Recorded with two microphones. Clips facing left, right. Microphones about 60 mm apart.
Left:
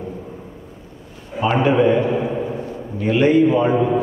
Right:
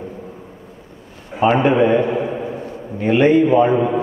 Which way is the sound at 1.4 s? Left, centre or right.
Right.